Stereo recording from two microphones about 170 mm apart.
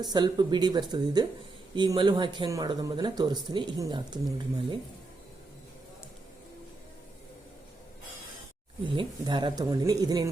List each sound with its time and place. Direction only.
0.0 s speech: 25° right (ahead or behind)
9.0 s speech: 25° right (ahead or behind)